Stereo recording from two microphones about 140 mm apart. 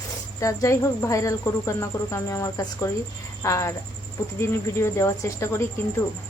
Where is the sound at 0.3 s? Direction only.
25° left (ahead or behind).